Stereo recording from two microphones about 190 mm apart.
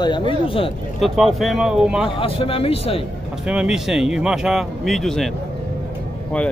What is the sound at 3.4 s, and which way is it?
Speech, 5° right (ahead or behind).